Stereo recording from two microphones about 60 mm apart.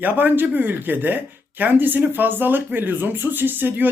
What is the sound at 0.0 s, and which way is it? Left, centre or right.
Speech, right.